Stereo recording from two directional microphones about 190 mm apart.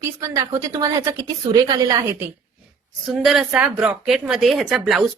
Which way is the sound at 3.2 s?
Centre (ahead or behind).